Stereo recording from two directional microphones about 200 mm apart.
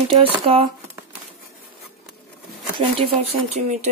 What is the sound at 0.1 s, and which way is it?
Speech, 30° right (ahead or behind).